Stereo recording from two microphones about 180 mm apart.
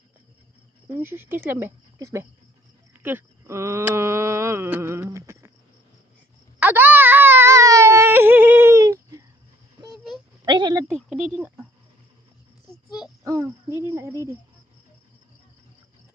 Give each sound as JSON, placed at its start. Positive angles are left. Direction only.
{"t": 0.8, "sound": "speech", "side_deg": -10}
{"t": 3.0, "sound": "a sound", "side_deg": -10}
{"t": 6.6, "sound": "wail", "side_deg": -10}
{"t": 10.4, "sound": "a sound", "side_deg": -20}
{"t": 10.9, "sound": "speech", "side_deg": 0}
{"t": 13.2, "sound": "speech", "side_deg": -20}